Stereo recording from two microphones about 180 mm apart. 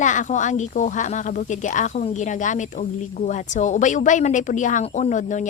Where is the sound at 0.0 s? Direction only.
45° left (ahead or behind).